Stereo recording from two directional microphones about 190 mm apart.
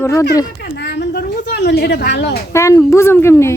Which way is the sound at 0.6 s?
55° left (ahead or behind).